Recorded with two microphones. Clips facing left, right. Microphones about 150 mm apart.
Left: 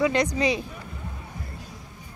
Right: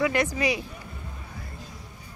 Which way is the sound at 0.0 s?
20° left (ahead or behind).